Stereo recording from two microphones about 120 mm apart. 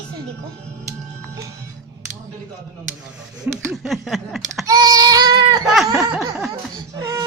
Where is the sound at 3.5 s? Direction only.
15° right (ahead or behind).